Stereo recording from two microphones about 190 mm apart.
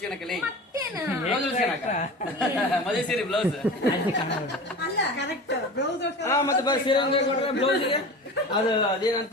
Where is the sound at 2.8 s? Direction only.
Centre (ahead or behind).